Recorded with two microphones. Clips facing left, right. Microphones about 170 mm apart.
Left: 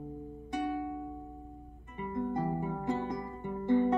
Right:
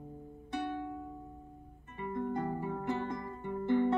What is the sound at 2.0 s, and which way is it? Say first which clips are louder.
Music: left 2 dB; 20° left (ahead or behind).